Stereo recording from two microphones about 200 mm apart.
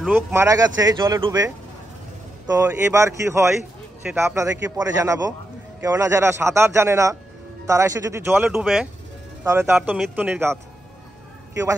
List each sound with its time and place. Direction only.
0.0 s speech: 10° right (ahead or behind)
8.5 s speech: centre (ahead or behind)
9.4 s speech: 15° right (ahead or behind)